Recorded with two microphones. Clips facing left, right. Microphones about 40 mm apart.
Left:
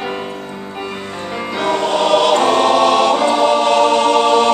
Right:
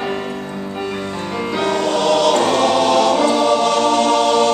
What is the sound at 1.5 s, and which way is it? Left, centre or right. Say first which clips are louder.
Music: left 2 dB; centre.